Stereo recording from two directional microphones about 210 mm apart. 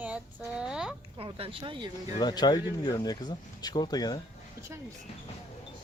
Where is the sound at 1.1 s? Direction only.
25° right (ahead or behind).